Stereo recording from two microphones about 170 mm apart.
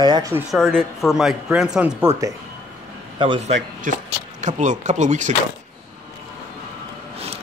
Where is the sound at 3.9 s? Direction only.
50° right (ahead or behind).